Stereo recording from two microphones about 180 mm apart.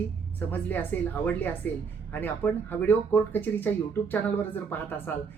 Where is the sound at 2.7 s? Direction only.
10° left (ahead or behind).